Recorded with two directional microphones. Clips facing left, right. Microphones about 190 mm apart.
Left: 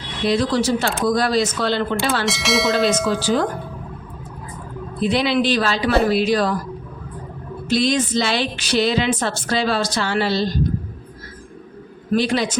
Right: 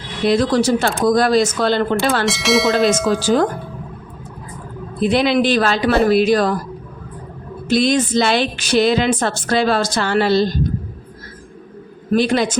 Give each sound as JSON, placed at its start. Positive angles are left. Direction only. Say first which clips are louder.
{"t": 0.3, "sound": "a woman's voice", "louder": "right 3 dB", "side_deg": -50}
{"t": 2.2, "sound": "speech", "louder": "right 4 dB", "side_deg": 0}
{"t": 3.1, "sound": "a woman's voice", "louder": "right 3 dB", "side_deg": -45}
{"t": 5.0, "sound": "a woman's voice", "louder": "right 3 dB", "side_deg": -50}
{"t": 7.7, "sound": "a woman's voice", "louder": "right 3 dB", "side_deg": -50}
{"t": 12.1, "sound": "a woman's voice", "louder": "right 3 dB", "side_deg": -50}